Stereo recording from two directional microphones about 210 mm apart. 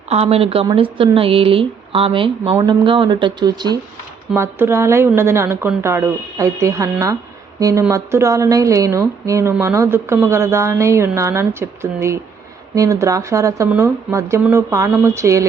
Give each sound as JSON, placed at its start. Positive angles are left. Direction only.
{"t": 0.1, "sound": "a woman's voice", "side_deg": -30}